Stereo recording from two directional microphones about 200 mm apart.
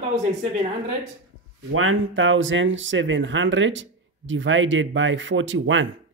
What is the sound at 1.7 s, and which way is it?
Speech, 85° right.